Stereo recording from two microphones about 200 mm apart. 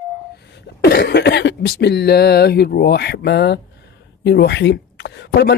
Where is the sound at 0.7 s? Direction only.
55° left (ahead or behind).